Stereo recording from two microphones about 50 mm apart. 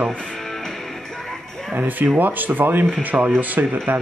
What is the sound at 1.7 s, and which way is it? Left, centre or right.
Speech, right.